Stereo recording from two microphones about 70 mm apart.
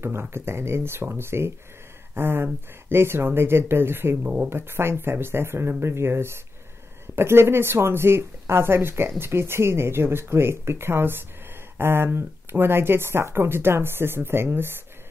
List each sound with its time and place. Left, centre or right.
0.0 s speech: right